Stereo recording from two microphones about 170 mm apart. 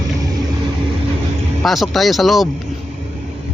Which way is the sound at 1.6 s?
Centre (ahead or behind).